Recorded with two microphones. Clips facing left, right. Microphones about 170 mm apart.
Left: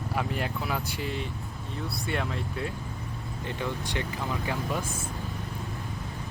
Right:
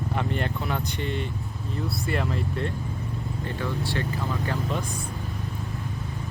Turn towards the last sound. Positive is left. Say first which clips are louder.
# right 2 dB
turn(degrees=15)  # may be behind; listen again after turning